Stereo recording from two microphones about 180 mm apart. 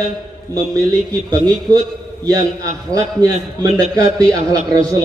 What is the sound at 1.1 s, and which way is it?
A man's voice, 20° right (ahead or behind).